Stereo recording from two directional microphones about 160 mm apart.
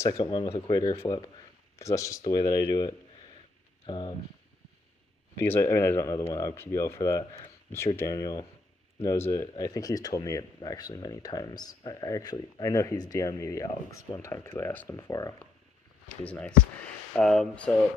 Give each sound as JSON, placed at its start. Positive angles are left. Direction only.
{"t": 0.0, "sound": "speech", "side_deg": 20}
{"t": 0.3, "sound": "speech", "side_deg": 30}
{"t": 5.4, "sound": "speech", "side_deg": 15}
{"t": 16.1, "sound": "speech", "side_deg": 10}